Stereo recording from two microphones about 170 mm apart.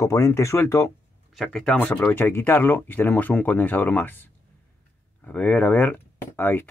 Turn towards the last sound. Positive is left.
turn(degrees=10)  # may be behind; listen again after turning